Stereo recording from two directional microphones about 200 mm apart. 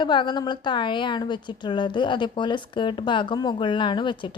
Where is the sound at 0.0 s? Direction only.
20° left (ahead or behind).